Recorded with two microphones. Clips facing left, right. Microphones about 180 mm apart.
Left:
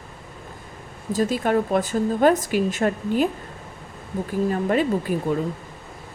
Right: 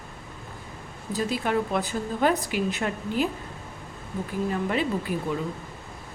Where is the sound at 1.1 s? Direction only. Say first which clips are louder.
Left 5 dB; 45° left (ahead or behind).